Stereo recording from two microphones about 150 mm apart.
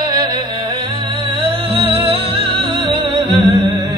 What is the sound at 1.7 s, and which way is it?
Music, 40° right (ahead or behind).